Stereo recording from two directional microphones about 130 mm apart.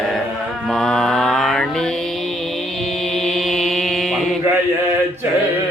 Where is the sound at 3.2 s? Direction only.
Centre (ahead or behind).